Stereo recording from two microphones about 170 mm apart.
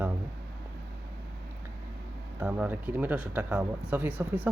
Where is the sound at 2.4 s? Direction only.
10° right (ahead or behind).